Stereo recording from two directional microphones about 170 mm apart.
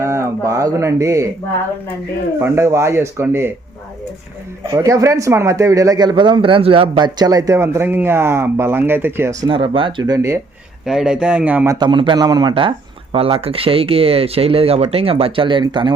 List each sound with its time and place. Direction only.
0.0 s a sound: 15° right (ahead or behind)
2.4 s speech: 15° right (ahead or behind)
4.7 s speech: 20° right (ahead or behind)
10.8 s a man's voice: 5° right (ahead or behind); by 16.0 s 30° right (ahead or behind)